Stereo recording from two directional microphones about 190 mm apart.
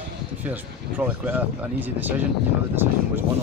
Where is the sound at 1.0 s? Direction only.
10° right (ahead or behind).